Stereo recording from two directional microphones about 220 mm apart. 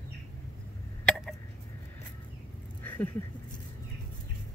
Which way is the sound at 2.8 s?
10° left (ahead or behind).